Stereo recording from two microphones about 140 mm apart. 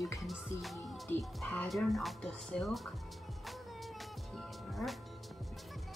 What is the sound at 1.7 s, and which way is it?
Speech, centre (ahead or behind).